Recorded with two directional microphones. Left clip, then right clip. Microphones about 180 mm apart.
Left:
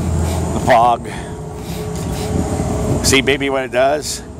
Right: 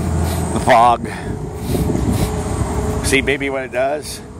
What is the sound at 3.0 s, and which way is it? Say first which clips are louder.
Speech: left 2 dB; 15° left (ahead or behind).